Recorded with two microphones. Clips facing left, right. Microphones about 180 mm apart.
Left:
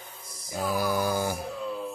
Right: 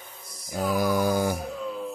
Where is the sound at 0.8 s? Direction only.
20° right (ahead or behind).